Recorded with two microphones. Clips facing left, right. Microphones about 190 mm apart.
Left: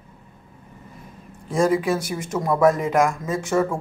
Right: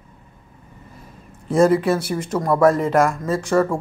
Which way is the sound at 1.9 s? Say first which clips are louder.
Right 3 dB; centre (ahead or behind).